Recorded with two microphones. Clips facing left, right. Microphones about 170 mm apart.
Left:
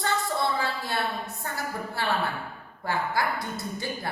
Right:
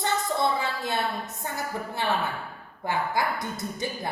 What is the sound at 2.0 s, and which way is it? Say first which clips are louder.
A woman's voice: even; 20° right (ahead or behind).